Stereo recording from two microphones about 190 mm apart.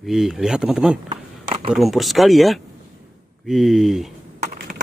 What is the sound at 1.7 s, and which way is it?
Speech, centre (ahead or behind).